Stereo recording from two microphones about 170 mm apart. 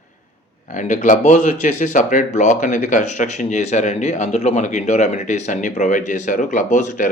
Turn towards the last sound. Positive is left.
turn(degrees=50)  # may be behind; listen again after turning